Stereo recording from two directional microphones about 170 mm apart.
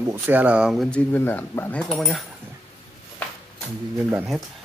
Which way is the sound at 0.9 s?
10° left (ahead or behind).